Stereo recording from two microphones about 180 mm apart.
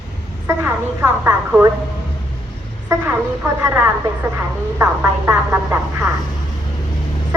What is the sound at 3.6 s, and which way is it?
A woman's voice, 15° right (ahead or behind).